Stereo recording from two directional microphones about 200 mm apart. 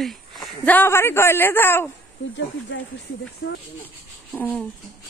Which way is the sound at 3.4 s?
55° left (ahead or behind).